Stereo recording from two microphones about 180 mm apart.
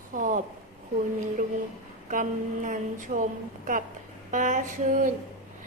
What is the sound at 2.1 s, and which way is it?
A woman's voice, 45° right (ahead or behind).